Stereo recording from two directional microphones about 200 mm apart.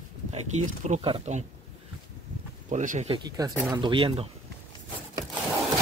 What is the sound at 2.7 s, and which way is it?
Speech, 40° right (ahead or behind).